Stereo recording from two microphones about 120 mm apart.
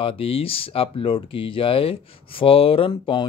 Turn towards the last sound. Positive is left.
turn(degrees=40)  # may be behind; listen again after turning